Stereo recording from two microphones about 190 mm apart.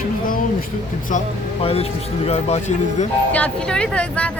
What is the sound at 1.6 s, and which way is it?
Speech, 30° left (ahead or behind).